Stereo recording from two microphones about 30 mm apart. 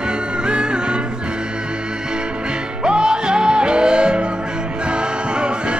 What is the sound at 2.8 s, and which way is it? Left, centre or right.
Music, right.